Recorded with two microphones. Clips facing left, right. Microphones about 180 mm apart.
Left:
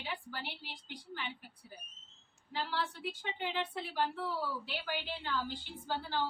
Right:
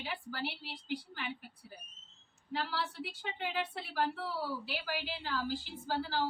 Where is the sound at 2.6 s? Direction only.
5° right (ahead or behind).